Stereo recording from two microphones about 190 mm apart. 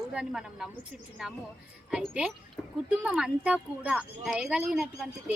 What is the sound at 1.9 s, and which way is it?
A woman's voice, 5° right (ahead or behind).